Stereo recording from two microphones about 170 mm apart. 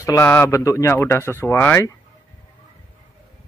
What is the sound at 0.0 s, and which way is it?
Speech, 15° left (ahead or behind).